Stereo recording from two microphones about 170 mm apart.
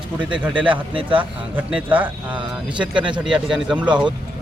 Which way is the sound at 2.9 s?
30° right (ahead or behind).